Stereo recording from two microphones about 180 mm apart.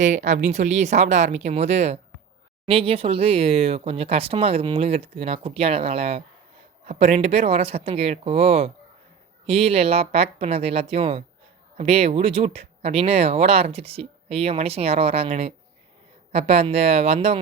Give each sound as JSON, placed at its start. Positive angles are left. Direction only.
{"t": 0.0, "sound": "speech", "side_deg": -45}